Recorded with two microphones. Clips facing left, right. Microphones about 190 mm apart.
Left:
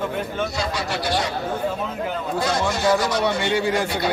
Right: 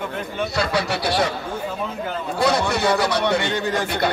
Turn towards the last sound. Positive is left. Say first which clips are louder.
# left 2 dB
turn(degrees=10)  # may be behind; listen again after turning